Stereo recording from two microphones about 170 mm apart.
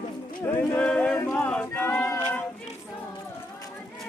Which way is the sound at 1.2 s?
15° left (ahead or behind).